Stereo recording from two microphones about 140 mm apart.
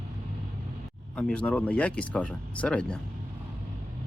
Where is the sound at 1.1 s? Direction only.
10° left (ahead or behind).